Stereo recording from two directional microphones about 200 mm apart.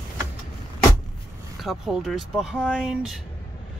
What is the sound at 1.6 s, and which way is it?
Speech, centre (ahead or behind).